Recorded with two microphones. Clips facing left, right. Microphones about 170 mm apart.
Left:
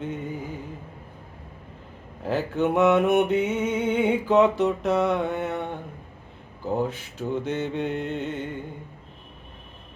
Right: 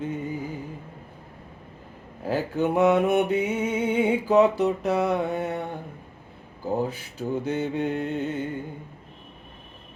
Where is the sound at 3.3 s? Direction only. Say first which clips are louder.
Left 1 dB; 5° right (ahead or behind).